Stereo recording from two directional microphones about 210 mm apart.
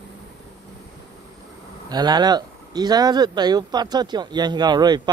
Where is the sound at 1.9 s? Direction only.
20° right (ahead or behind).